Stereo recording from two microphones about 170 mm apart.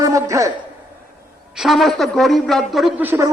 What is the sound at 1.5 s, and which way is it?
Speech, centre (ahead or behind).